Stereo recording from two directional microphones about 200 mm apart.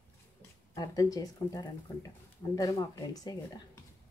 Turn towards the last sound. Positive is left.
turn(degrees=20)  # may be behind; listen again after turning